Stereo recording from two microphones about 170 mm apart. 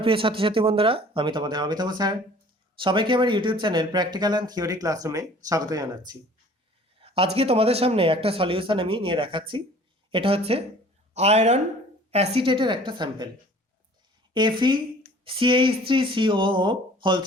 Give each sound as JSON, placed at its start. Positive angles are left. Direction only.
{"t": 0.0, "sound": "speech", "side_deg": -30}
{"t": 7.2, "sound": "speech", "side_deg": -35}
{"t": 14.3, "sound": "speech", "side_deg": -25}